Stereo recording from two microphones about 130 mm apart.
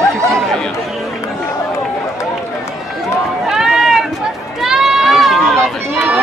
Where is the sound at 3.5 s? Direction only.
5° right (ahead or behind).